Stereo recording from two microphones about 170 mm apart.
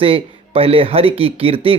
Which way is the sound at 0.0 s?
35° right (ahead or behind).